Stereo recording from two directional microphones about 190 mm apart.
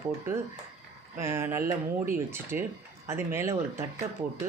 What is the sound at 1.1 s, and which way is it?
Speech, 15° right (ahead or behind).